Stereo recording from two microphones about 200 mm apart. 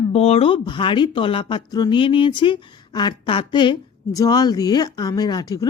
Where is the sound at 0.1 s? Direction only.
30° left (ahead or behind).